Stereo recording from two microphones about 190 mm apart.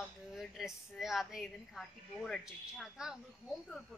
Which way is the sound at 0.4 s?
Centre (ahead or behind).